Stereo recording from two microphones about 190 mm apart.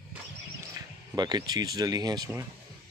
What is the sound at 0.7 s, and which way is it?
Speech, 20° right (ahead or behind).